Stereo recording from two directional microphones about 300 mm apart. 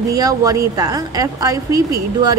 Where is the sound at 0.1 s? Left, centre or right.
Centre.